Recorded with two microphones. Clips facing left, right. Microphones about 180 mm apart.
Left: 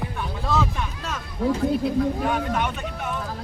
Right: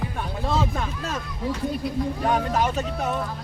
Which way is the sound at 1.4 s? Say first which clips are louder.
Left 6 dB; 80° left.